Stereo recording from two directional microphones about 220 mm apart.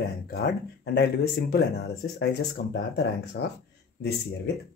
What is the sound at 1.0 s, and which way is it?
Speech, 45° left (ahead or behind).